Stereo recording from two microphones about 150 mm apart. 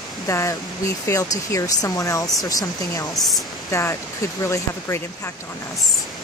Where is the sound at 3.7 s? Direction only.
20° left (ahead or behind).